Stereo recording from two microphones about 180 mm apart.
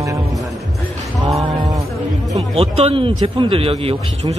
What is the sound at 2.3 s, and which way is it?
A man's voice, 35° right (ahead or behind).